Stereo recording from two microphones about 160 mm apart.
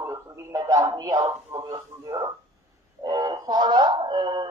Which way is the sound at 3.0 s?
25° right (ahead or behind).